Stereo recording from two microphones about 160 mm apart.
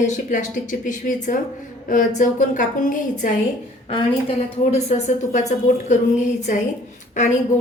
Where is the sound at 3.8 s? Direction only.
35° left (ahead or behind).